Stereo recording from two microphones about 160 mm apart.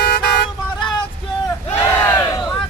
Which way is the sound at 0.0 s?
90° left.